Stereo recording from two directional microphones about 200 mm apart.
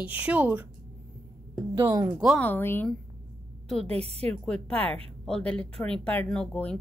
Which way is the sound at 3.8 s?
30° right (ahead or behind).